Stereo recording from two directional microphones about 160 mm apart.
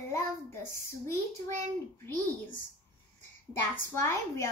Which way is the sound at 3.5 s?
15° left (ahead or behind).